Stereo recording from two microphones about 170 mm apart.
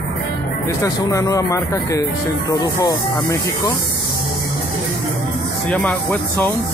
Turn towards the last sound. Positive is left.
turn(degrees=10)  # may be behind; listen again after turning